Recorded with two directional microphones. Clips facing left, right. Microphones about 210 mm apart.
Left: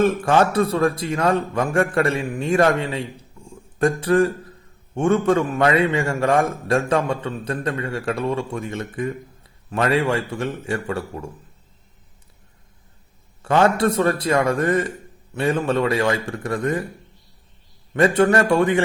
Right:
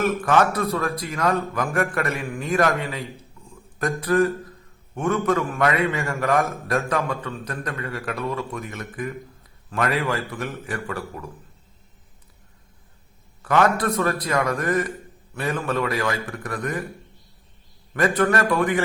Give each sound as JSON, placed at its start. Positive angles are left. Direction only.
{"t": 0.0, "sound": "a man's voice", "side_deg": 30}
{"t": 3.5, "sound": "a sound", "side_deg": 30}
{"t": 4.9, "sound": "a man's voice", "side_deg": 30}
{"t": 13.4, "sound": "a man's voice", "side_deg": 30}
{"t": 17.9, "sound": "a man's voice", "side_deg": 25}